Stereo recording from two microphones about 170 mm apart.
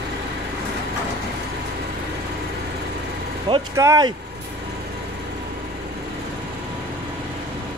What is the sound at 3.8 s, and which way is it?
Speech, 20° right (ahead or behind).